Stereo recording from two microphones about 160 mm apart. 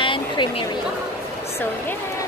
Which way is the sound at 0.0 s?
30° left (ahead or behind).